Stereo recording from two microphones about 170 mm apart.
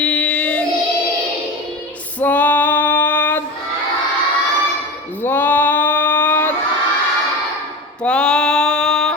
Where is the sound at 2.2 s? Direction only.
10° left (ahead or behind).